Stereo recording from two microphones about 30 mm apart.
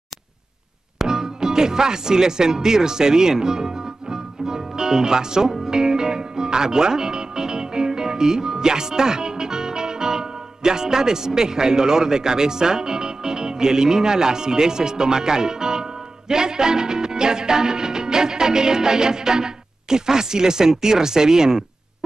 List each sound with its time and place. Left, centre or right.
0.9 s speech: centre